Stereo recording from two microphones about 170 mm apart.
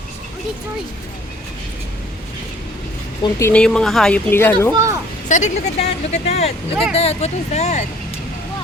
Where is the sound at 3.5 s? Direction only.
5° left (ahead or behind).